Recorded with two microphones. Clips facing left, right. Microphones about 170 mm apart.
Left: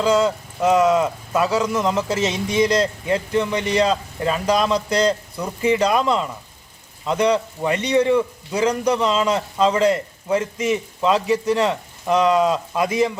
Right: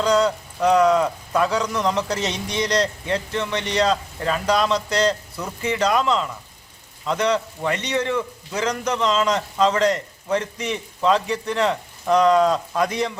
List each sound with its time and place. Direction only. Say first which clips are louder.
0.0 s a man's voice: left 1 dB; 5° left (ahead or behind)
12.5 s speech: even; 20° left (ahead or behind)
12.9 s a man's voice: left 5 dB; 10° left (ahead or behind)